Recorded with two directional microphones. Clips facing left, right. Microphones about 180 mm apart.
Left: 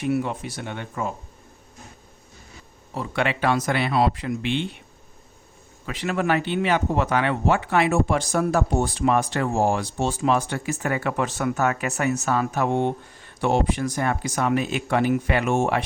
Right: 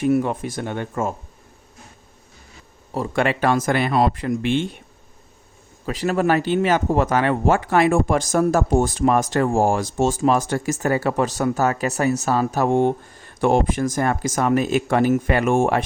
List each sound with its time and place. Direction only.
0.0 s speech: 45° right (ahead or behind)
2.9 s speech: 45° right (ahead or behind)
5.8 s speech: 40° right (ahead or behind)